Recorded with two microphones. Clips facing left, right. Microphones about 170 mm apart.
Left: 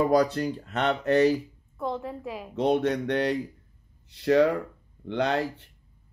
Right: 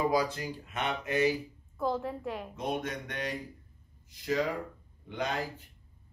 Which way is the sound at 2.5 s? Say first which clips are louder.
Left 13 dB; 70° left (ahead or behind).